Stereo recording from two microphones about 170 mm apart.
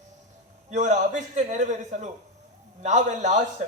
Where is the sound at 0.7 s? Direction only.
45° right (ahead or behind).